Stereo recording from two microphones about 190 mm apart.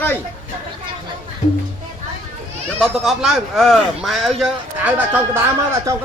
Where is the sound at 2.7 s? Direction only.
Centre (ahead or behind).